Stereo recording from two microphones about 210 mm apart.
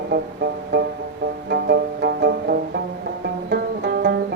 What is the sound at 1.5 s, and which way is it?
Music, 50° right (ahead or behind).